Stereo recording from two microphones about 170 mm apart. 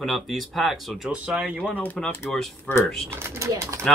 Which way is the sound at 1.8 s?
10° left (ahead or behind).